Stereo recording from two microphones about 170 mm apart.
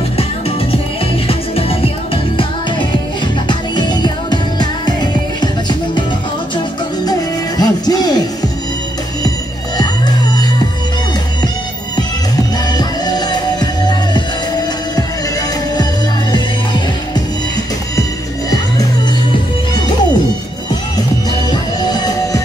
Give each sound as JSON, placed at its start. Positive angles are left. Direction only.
{"t": 1.2, "sound": "music", "side_deg": 35}
{"t": 3.4, "sound": "music", "side_deg": 25}
{"t": 7.1, "sound": "music", "side_deg": 20}
{"t": 12.4, "sound": "music", "side_deg": 25}
{"t": 21.5, "sound": "music", "side_deg": 25}